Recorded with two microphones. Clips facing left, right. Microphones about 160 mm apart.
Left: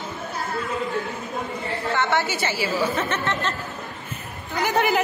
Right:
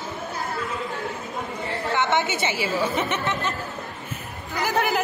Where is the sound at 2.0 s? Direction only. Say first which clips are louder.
Right 1 dB; 20° right (ahead or behind).